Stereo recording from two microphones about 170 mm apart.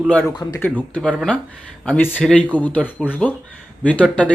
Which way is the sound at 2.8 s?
5° right (ahead or behind).